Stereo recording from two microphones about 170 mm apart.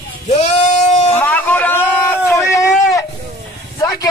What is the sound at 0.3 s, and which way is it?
Sheep, 40° left (ahead or behind).